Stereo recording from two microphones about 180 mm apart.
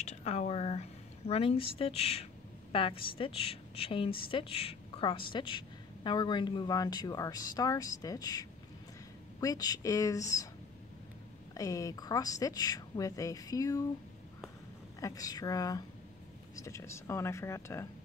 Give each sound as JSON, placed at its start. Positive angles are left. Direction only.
{"t": 0.0, "sound": "a woman's voice", "side_deg": 40}
{"t": 11.5, "sound": "speech", "side_deg": 20}
{"t": 15.0, "sound": "speech", "side_deg": 20}